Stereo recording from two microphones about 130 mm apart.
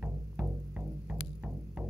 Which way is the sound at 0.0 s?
5° right (ahead or behind).